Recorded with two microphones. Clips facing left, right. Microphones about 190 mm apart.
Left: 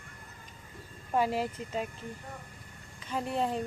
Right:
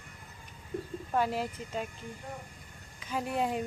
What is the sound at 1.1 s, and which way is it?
Speech, centre (ahead or behind).